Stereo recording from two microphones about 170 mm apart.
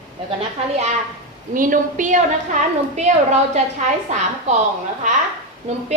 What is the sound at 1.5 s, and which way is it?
Speech, 50° right (ahead or behind).